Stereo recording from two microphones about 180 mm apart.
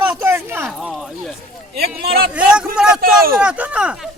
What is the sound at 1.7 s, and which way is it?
Speech, 60° right (ahead or behind).